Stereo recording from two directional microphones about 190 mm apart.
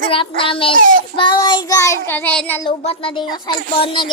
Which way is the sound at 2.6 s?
30° left (ahead or behind).